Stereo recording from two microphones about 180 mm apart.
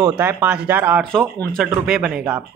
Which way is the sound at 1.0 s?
10° left (ahead or behind).